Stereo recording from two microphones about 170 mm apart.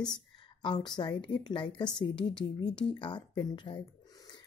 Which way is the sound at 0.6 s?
25° left (ahead or behind).